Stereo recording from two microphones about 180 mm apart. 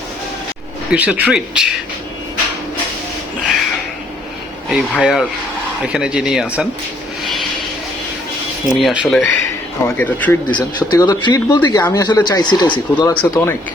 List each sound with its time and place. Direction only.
0.9 s speech: 10° right (ahead or behind)
4.7 s speech: centre (ahead or behind)
8.7 s speech: centre (ahead or behind)
10.5 s speech: 25° left (ahead or behind)